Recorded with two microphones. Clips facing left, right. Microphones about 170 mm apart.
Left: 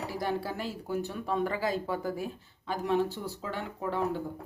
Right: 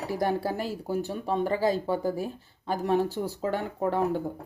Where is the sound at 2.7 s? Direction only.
40° right (ahead or behind).